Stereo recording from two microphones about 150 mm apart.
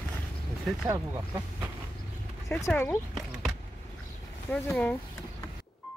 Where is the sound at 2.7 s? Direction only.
15° left (ahead or behind).